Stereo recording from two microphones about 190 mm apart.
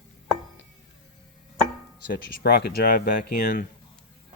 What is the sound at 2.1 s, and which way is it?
Speech, 55° left (ahead or behind).